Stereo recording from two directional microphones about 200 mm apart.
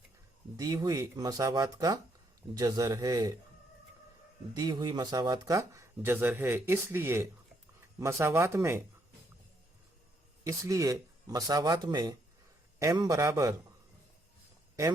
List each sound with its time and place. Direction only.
0.5 s speech: 15° right (ahead or behind)
4.5 s speech: 20° right (ahead or behind)
10.4 s speech: 15° right (ahead or behind)